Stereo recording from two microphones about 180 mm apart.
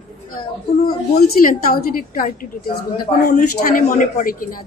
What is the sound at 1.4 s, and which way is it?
A woman's voice, 50° left (ahead or behind).